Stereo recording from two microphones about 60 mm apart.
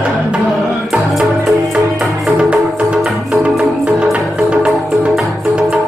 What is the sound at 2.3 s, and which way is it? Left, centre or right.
Music, centre.